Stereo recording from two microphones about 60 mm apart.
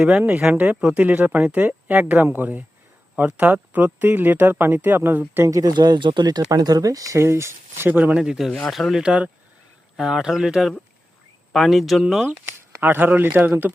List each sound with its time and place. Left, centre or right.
0.1 s speech: right
0.8 s speech: centre
1.0 s a man's voice: right
5.5 s speech: right
7.3 s speech: right
7.9 s a man's voice: right
8.2 s speech: centre
9.0 s a man's voice: right
10.0 s speech: centre
12.5 s speech: right